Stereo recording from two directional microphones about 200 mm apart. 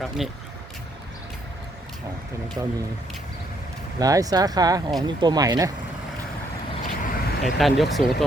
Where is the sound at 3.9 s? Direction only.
15° right (ahead or behind).